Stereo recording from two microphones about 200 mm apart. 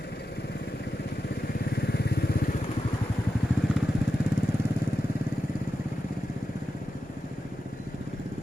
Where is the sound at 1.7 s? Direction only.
55° left (ahead or behind).